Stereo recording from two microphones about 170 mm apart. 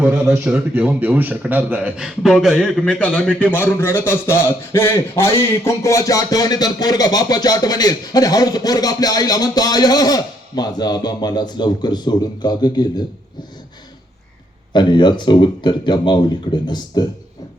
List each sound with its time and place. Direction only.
0.0 s a man's voice: 10° right (ahead or behind); by 13.1 s 25° left (ahead or behind)
14.7 s a man's voice: 25° left (ahead or behind)